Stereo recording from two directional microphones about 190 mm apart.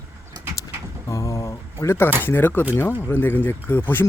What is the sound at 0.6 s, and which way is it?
Keys jangling, 15° left (ahead or behind).